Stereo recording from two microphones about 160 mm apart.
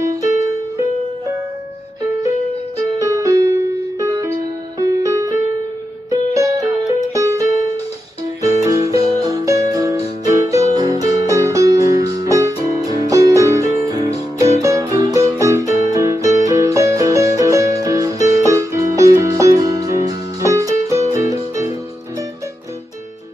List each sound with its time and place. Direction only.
0.0 s music: 20° right (ahead or behind)
3.0 s music: 20° right (ahead or behind)
8.6 s music: 20° right (ahead or behind)